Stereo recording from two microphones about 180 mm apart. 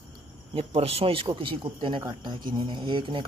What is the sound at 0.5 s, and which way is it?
Speech, 35° right (ahead or behind).